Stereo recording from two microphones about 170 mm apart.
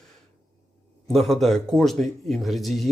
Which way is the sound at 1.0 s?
Centre (ahead or behind).